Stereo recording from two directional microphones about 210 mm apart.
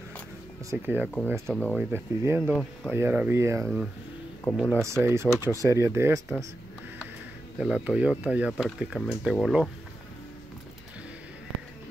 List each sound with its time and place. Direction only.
0.7 s speech: 10° right (ahead or behind)
1.5 s speech: centre (ahead or behind)
1.9 s speech: 10° right (ahead or behind)
4.5 s speech: 5° left (ahead or behind)
4.8 s speech: 15° right (ahead or behind)
7.5 s speech: 5° right (ahead or behind)